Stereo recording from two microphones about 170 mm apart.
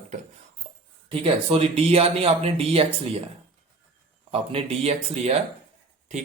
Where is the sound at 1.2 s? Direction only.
35° right (ahead or behind).